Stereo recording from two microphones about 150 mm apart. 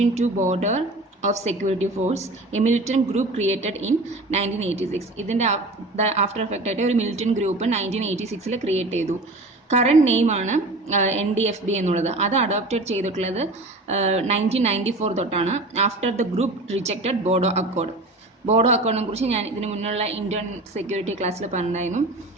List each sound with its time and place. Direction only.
0.0 s a woman's voice: 50° right (ahead or behind)